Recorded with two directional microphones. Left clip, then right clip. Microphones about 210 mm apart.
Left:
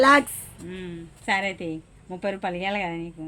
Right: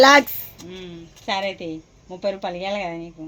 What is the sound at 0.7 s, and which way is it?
A woman's voice, 25° left (ahead or behind).